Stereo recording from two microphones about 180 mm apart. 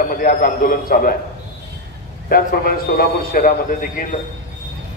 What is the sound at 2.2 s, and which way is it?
A man's voice, 55° left (ahead or behind).